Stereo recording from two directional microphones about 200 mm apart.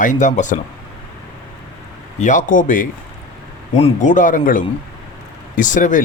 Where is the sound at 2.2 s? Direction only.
40° left (ahead or behind).